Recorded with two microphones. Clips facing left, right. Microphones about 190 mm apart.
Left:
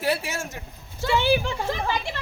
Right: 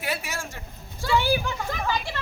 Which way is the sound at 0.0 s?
30° left (ahead or behind).